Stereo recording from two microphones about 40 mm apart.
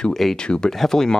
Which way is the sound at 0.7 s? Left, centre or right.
Centre.